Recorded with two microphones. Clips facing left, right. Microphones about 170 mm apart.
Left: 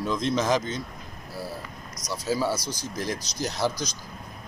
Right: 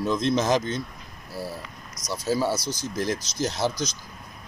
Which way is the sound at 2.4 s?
20° right (ahead or behind).